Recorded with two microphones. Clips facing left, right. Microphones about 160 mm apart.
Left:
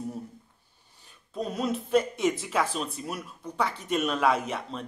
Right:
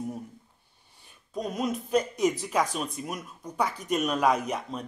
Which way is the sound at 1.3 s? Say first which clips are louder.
Even; 15° right (ahead or behind).